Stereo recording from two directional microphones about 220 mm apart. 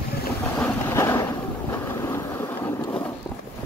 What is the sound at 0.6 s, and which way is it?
Vehicle, 10° left (ahead or behind).